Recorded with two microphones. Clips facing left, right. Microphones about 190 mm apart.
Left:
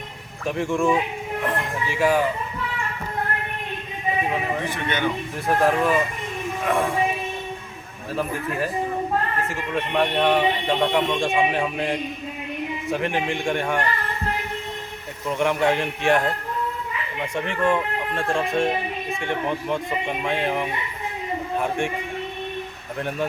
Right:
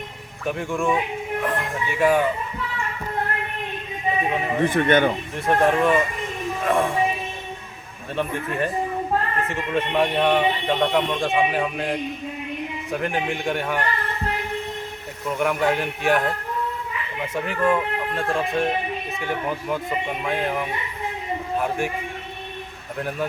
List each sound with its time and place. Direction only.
0.4 s speech: centre (ahead or behind)
4.6 s speech: 50° right (ahead or behind)
5.5 s speech: centre (ahead or behind)
8.1 s speech: 5° left (ahead or behind)
15.3 s speech: 5° right (ahead or behind)
17.3 s speech: 5° right (ahead or behind)